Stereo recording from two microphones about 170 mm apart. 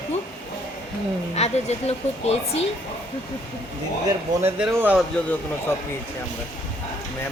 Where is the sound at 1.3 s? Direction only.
40° left (ahead or behind).